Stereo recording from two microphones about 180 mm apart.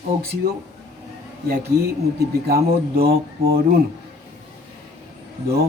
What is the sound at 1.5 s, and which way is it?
Speech, 60° right (ahead or behind).